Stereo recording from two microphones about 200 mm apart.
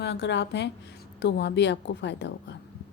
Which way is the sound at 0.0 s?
60° left (ahead or behind).